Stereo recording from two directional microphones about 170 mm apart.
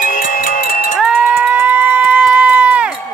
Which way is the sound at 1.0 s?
5° right (ahead or behind).